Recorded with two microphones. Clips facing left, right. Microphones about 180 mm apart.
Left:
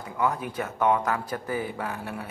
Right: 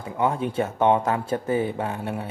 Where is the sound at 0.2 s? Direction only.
25° right (ahead or behind).